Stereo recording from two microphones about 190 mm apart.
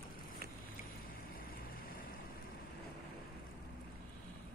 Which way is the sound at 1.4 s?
50° left (ahead or behind).